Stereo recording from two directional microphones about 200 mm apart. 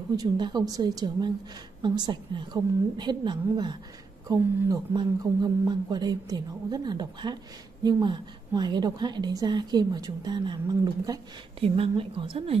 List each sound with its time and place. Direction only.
0.1 s a woman's voice: 20° right (ahead or behind)